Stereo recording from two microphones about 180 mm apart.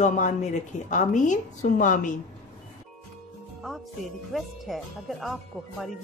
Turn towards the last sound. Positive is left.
turn(degrees=0)  # may be behind; listen again after turning